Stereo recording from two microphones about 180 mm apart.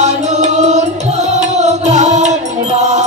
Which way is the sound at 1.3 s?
40° right (ahead or behind).